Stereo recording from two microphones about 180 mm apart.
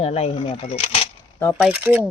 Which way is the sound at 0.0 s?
35° left (ahead or behind).